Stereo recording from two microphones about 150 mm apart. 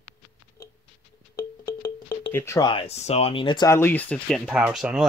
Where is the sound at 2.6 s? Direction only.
35° left (ahead or behind).